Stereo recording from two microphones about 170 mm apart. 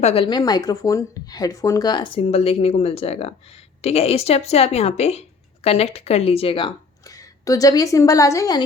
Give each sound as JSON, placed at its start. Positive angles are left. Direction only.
{"t": 0.0, "sound": "a woman's voice", "side_deg": 35}